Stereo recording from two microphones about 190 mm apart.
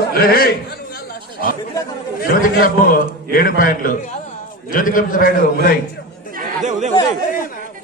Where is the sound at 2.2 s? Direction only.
50° left (ahead or behind).